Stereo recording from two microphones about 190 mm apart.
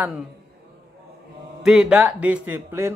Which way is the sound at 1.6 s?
5° right (ahead or behind).